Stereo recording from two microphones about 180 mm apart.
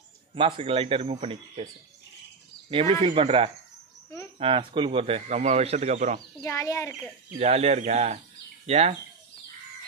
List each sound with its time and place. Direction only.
0.3 s speech: 30° right (ahead or behind)
2.7 s speech: 30° right (ahead or behind)
6.4 s speech: 15° left (ahead or behind)
7.3 s speech: 35° right (ahead or behind)